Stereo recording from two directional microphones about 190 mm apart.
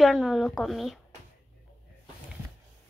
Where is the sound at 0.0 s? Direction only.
Centre (ahead or behind).